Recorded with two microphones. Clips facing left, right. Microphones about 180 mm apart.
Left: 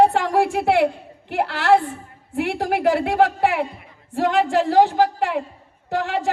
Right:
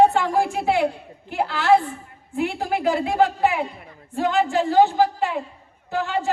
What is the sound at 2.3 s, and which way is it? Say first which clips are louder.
Speech: left 2 dB; 75° left (ahead or behind).